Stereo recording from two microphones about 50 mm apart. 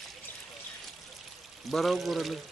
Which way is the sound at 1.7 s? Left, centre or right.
Centre.